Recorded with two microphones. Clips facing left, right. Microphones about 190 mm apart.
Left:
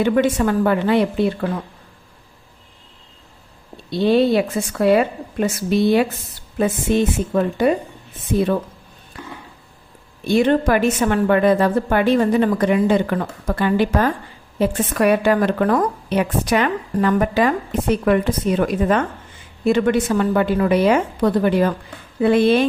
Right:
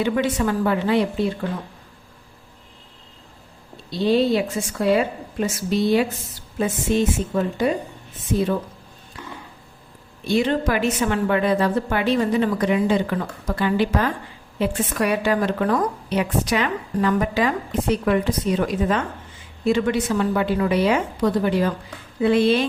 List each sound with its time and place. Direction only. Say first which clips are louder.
0.0 s a woman's voice: left 4 dB; 50° left (ahead or behind)
3.9 s a woman's voice: left 3 dB; 60° left (ahead or behind)
10.2 s a woman's voice: left 4 dB; 55° left (ahead or behind)